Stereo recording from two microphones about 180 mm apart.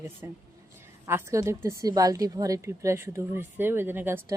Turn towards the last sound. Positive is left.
turn(degrees=-10)  # may be behind; listen again after turning